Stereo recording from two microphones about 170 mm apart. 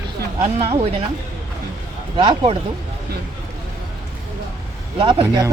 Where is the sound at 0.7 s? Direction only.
35° right (ahead or behind).